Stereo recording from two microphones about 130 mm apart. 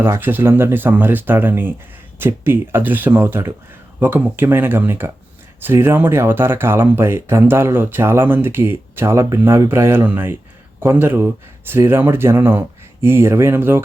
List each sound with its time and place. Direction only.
0.0 s speech: 15° right (ahead or behind)